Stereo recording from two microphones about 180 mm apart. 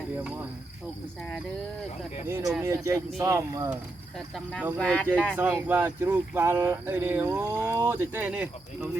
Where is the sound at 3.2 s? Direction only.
15° right (ahead or behind).